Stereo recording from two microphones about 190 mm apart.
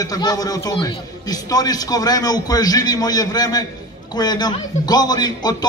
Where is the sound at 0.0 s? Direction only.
20° left (ahead or behind).